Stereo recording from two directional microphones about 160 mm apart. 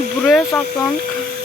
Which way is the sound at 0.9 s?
65° right (ahead or behind).